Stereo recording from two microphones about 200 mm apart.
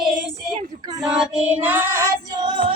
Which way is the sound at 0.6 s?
20° right (ahead or behind).